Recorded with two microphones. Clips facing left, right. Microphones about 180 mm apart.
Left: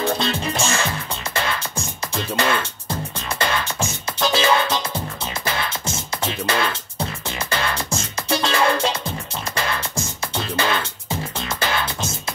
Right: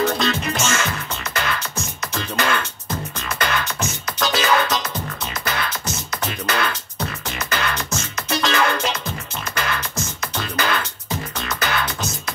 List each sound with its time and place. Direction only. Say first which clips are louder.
0.0 s music: right 1 dB; 30° left (ahead or behind)